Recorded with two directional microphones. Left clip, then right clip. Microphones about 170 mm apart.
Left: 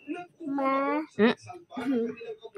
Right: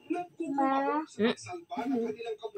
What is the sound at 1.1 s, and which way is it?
Speech, 45° left (ahead or behind).